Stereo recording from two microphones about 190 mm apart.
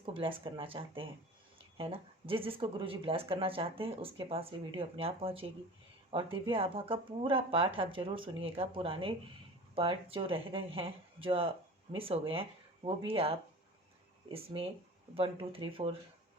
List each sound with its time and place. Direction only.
0.0 s speech: 25° right (ahead or behind)